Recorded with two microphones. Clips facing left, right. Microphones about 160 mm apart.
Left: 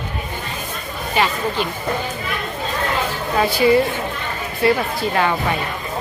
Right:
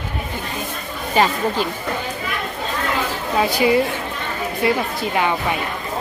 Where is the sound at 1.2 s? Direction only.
40° right (ahead or behind).